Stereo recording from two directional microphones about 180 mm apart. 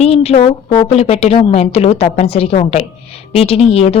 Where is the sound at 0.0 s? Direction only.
35° left (ahead or behind).